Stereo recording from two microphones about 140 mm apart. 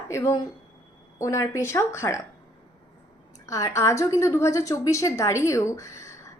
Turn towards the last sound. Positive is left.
turn(degrees=20)  # may be behind; listen again after turning